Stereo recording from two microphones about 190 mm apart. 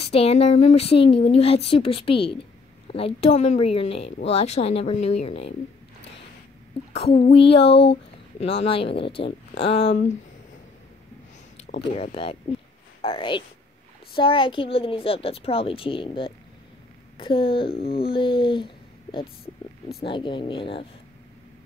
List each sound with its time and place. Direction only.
0.0 s speech: 30° left (ahead or behind)
7.2 s speech: 30° left (ahead or behind)
7.6 s speech: 60° left (ahead or behind)
8.4 s a woman's voice: 35° left (ahead or behind)
11.5 s a sound: 35° left (ahead or behind)
11.9 s a woman's voice: 30° left (ahead or behind)
20.0 s a woman's voice: 25° left (ahead or behind)